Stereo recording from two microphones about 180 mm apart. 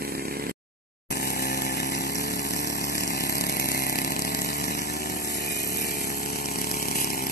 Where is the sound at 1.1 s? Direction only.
65° left (ahead or behind).